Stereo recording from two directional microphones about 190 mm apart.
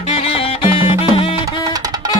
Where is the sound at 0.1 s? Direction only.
30° left (ahead or behind).